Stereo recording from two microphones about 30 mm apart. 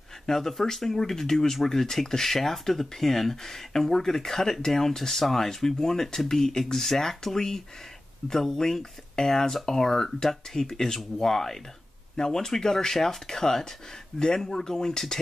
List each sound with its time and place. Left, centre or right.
0.3 s speech: centre